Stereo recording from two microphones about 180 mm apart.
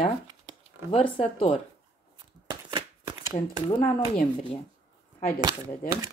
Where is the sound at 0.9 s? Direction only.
30° left (ahead or behind).